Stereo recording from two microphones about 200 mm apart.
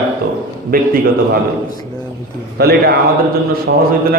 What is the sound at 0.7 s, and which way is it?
Speech, 45° right (ahead or behind).